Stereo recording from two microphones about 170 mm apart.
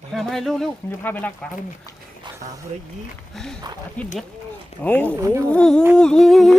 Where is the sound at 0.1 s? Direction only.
Centre (ahead or behind).